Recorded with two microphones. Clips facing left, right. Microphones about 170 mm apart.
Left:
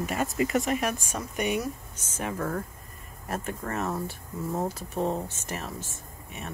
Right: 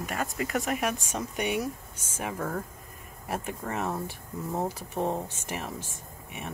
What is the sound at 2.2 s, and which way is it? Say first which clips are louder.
Speech: left 2 dB; 10° right (ahead or behind).